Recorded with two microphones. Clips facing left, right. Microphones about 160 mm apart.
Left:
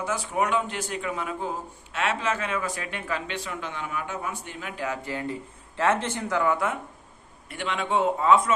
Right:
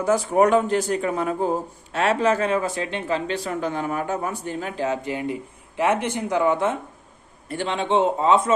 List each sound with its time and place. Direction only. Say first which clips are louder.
0.0 s a man's voice: right 9 dB; 40° right (ahead or behind); by 8.5 s 25° right (ahead or behind)